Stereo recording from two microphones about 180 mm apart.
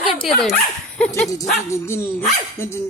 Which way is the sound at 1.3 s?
15° left (ahead or behind).